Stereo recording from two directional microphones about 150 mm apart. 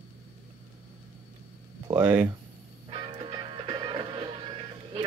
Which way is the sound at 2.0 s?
10° right (ahead or behind).